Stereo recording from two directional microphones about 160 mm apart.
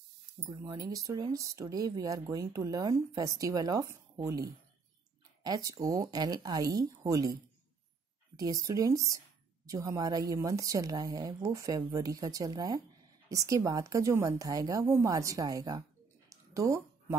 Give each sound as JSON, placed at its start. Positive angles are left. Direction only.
{"t": 0.5, "sound": "speech", "side_deg": -25}
{"t": 8.4, "sound": "speech", "side_deg": -20}
{"t": 16.3, "sound": "a sound", "side_deg": -20}